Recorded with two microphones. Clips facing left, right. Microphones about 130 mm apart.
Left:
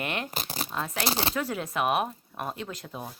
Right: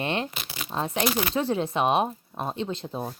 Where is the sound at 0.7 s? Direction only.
30° right (ahead or behind).